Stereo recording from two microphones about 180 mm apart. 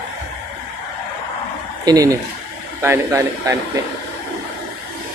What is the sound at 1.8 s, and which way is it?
A man's voice, 20° right (ahead or behind).